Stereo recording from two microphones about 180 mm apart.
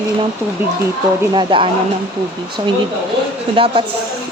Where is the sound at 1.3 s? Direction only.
25° right (ahead or behind).